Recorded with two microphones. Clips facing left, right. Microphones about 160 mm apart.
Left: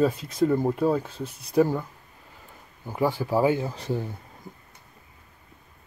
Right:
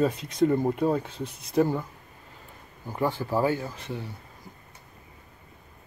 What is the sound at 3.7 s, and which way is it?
Speech, 40° left (ahead or behind).